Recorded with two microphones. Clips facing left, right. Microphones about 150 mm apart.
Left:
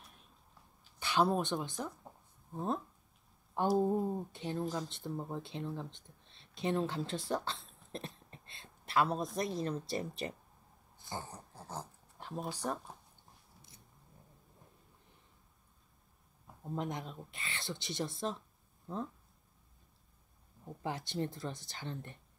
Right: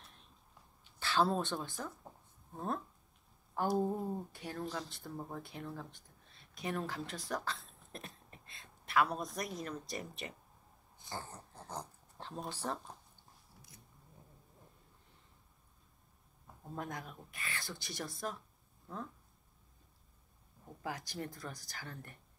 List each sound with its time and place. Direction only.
0.9 s speech: 15° left (ahead or behind)
3.6 s speech: centre (ahead or behind)
3.9 s speech: 15° left (ahead or behind)
8.3 s a sound: 30° left (ahead or behind)
9.4 s speech: 30° left (ahead or behind)
11.1 s dog: 15° left (ahead or behind)
16.6 s speech: 20° left (ahead or behind)
20.8 s speech: 25° left (ahead or behind)